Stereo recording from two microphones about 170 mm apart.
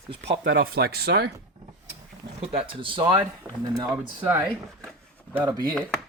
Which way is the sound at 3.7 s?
20° right (ahead or behind).